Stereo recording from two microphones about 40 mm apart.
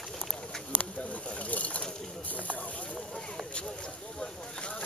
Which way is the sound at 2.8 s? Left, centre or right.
Left.